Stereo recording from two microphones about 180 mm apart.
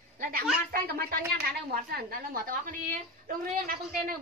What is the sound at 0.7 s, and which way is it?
A woman's voice, 55° right (ahead or behind).